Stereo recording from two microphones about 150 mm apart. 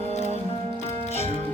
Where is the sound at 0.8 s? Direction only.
45° left (ahead or behind).